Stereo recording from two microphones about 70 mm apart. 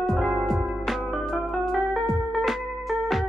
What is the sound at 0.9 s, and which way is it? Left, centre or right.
Music, centre.